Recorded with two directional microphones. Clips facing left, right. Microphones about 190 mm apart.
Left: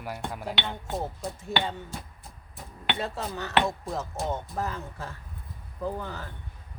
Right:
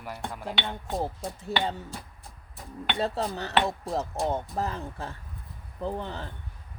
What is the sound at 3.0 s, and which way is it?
Speech, 35° right (ahead or behind).